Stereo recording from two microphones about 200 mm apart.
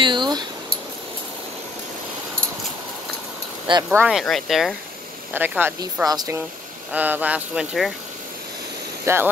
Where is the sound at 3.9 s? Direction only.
5° right (ahead or behind).